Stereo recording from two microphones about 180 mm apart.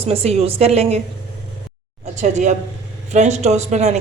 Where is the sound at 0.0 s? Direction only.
35° right (ahead or behind).